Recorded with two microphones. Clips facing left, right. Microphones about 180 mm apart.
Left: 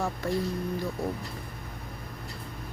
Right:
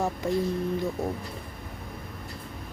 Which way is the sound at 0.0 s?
20° right (ahead or behind).